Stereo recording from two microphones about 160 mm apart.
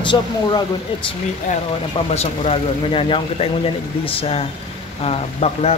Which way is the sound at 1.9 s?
40° left (ahead or behind).